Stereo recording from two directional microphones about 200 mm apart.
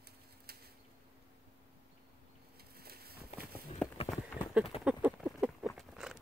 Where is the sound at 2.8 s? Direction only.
50° right (ahead or behind).